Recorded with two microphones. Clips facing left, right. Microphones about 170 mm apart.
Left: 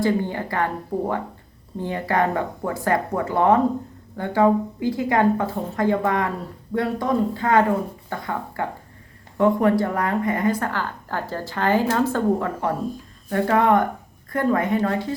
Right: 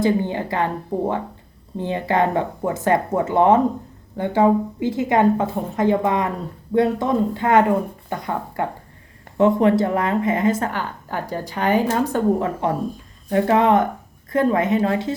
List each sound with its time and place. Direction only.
0.0 s a woman's voice: 20° right (ahead or behind)